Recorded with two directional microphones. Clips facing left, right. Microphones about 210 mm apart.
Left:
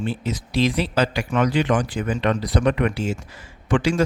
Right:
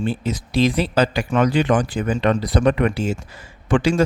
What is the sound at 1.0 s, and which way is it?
Speech, 30° right (ahead or behind).